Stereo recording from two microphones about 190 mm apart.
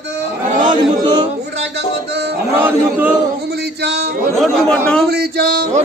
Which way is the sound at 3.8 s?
60° right (ahead or behind).